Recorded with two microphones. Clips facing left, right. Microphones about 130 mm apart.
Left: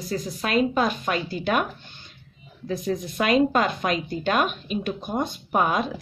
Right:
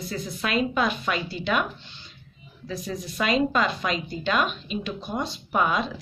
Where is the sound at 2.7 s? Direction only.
50° left (ahead or behind).